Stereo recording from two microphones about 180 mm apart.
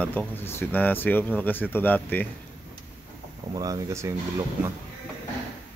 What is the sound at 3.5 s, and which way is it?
Speech, 20° right (ahead or behind).